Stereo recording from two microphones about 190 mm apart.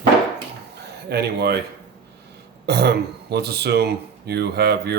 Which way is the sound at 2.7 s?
60° right (ahead or behind).